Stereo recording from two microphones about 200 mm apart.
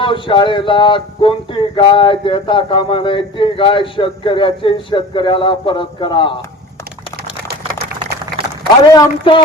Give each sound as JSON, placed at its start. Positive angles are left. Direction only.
{"t": 0.0, "sound": "speech", "side_deg": 25}
{"t": 8.9, "sound": "speech", "side_deg": 20}